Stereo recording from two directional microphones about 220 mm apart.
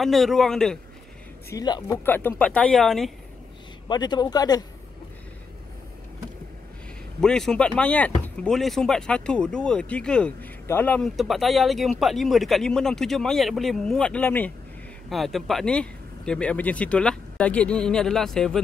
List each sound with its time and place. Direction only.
0.0 s speech: centre (ahead or behind)
1.5 s speech: 15° left (ahead or behind); by 3.1 s centre (ahead or behind)
3.9 s speech: 20° left (ahead or behind)
7.2 s speech: centre (ahead or behind)